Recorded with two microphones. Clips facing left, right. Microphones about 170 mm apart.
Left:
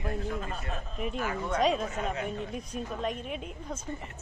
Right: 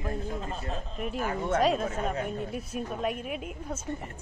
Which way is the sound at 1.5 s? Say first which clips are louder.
Right 1 dB; centre (ahead or behind).